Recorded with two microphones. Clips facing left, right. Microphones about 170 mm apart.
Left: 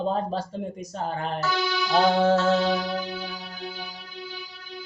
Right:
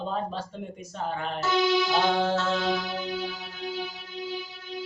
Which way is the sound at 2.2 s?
45° left (ahead or behind).